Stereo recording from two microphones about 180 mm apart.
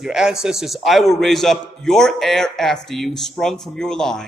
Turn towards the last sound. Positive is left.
turn(degrees=5)  # may be behind; listen again after turning